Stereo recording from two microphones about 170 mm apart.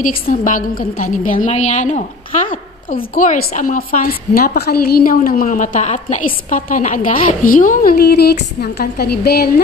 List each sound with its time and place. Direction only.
0.3 s a woman's voice: 50° left (ahead or behind); by 9.5 s 70° left (ahead or behind)